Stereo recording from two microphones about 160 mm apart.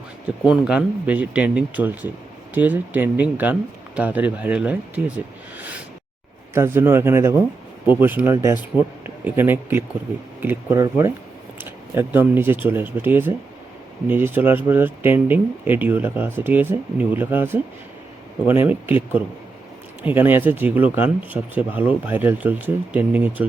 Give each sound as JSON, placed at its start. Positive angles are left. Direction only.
{"t": 0.4, "sound": "speech", "side_deg": -5}
{"t": 20.1, "sound": "speech", "side_deg": -10}